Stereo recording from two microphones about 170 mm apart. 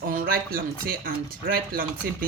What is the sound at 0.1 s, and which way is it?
Speech, 60° right (ahead or behind).